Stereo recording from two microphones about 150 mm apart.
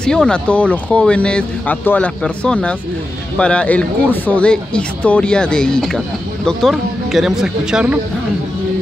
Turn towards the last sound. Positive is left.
turn(degrees=-5)  # may be behind; listen again after turning